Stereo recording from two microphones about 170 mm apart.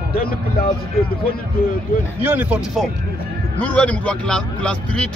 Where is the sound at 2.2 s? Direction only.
10° right (ahead or behind).